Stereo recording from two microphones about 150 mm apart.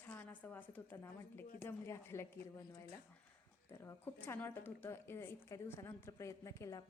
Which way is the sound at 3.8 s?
15° left (ahead or behind).